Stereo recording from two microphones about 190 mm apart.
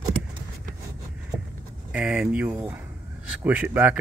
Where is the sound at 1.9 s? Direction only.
5° right (ahead or behind).